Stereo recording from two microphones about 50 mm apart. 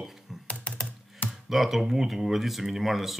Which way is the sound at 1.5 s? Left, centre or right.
Centre.